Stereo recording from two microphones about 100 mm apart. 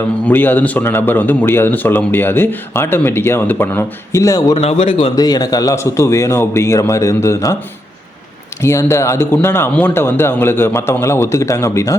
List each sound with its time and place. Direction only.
0.3 s a man's voice: 20° left (ahead or behind); by 4.5 s 35° left (ahead or behind)
4.5 s speech: 90° left; by 5.1 s 75° left (ahead or behind)
5.1 s a man's voice: 40° left (ahead or behind)
8.6 s a man's voice: 30° left (ahead or behind)